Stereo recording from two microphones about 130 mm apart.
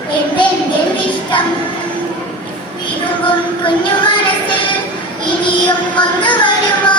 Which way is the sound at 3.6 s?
40° left (ahead or behind).